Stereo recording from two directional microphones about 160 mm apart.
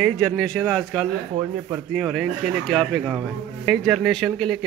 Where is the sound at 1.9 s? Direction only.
Centre (ahead or behind).